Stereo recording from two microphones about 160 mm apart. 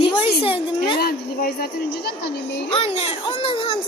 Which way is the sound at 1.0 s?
70° left (ahead or behind).